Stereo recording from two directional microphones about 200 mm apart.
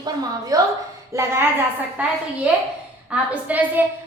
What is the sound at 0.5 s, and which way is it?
A woman's voice, 20° right (ahead or behind).